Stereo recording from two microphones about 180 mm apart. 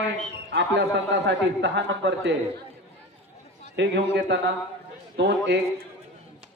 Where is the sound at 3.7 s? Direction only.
75° right (ahead or behind).